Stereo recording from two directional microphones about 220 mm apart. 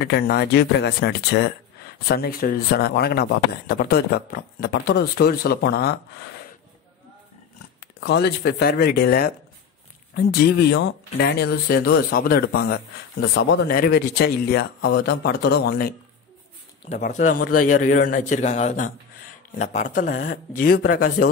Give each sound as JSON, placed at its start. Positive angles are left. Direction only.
{"t": 0.0, "sound": "speech", "side_deg": 50}
{"t": 7.8, "sound": "speech", "side_deg": 45}
{"t": 17.0, "sound": "a man's voice", "side_deg": 35}